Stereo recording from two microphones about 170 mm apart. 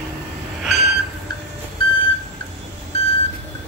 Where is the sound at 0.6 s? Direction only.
Centre (ahead or behind).